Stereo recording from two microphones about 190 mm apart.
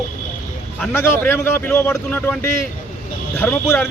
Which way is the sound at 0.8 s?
10° left (ahead or behind).